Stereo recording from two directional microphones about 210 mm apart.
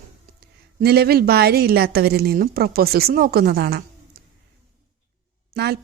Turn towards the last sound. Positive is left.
turn(degrees=-50)  # may be behind; listen again after turning